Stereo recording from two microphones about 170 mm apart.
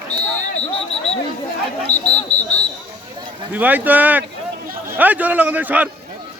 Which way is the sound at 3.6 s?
10° right (ahead or behind).